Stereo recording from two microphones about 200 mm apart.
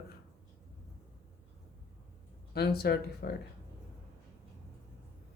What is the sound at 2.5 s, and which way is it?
Speech, 50° left (ahead or behind).